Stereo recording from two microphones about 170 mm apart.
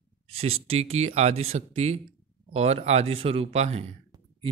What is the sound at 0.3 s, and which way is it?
Speech, 35° right (ahead or behind).